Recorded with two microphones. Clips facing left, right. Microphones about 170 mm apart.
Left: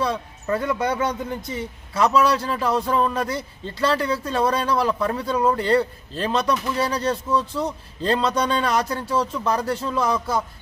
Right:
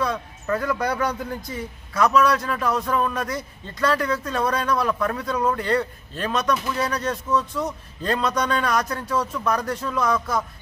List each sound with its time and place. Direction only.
0.0 s speech: 25° left (ahead or behind)